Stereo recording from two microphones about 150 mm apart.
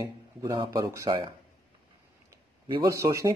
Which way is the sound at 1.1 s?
35° right (ahead or behind).